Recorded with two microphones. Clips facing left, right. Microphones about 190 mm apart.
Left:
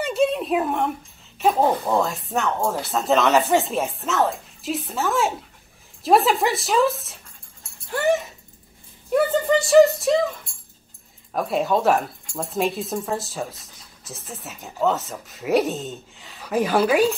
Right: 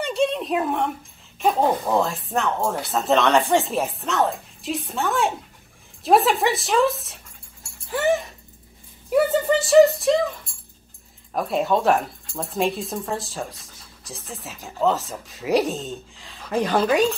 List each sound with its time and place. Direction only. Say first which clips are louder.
0.0 s a sound: left 1 dB; 5° left (ahead or behind)
1.4 s speech: left 1 dB; centre (ahead or behind)
7.8 s dog: even; centre (ahead or behind)
9.1 s speech: even; 5° right (ahead or behind)
11.3 s speech: even; centre (ahead or behind)